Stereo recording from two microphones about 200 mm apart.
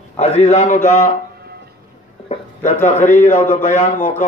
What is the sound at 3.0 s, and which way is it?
A man's voice, 40° left (ahead or behind).